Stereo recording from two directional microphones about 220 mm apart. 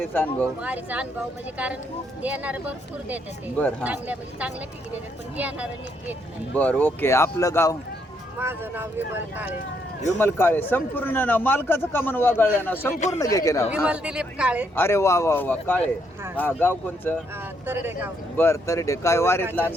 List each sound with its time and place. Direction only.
0.0 s a man's voice: 10° left (ahead or behind)
0.6 s speech: 5° right (ahead or behind)
6.6 s a man's voice: 5° left (ahead or behind)
8.4 s speech: 10° right (ahead or behind)
10.2 s a man's voice: 10° left (ahead or behind)
12.9 s speech: 30° left (ahead or behind)
13.1 s a man's voice: 15° left (ahead or behind)
13.7 s speech: 5° right (ahead or behind)
14.8 s a man's voice: 10° left (ahead or behind)
17.7 s speech: 10° right (ahead or behind)
18.3 s a man's voice: 10° left (ahead or behind)